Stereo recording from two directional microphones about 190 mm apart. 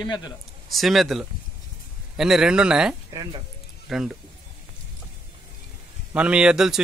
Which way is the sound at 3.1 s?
20° right (ahead or behind).